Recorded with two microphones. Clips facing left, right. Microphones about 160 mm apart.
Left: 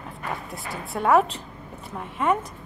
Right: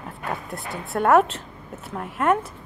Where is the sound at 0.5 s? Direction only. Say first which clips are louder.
Right 3 dB; centre (ahead or behind).